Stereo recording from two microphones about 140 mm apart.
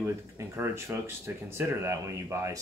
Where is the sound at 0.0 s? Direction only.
20° right (ahead or behind).